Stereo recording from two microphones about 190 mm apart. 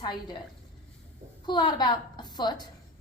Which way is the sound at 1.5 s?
25° left (ahead or behind).